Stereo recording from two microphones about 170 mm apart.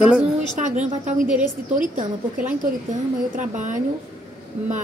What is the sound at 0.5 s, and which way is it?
A woman's voice, 45° right (ahead or behind).